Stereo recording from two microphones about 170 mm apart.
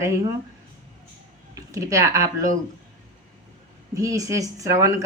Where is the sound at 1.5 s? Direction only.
20° right (ahead or behind).